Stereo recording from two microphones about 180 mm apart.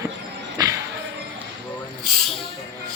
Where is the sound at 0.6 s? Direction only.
20° right (ahead or behind).